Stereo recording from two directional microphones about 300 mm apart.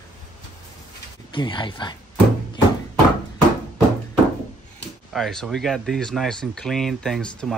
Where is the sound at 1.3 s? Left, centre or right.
Centre.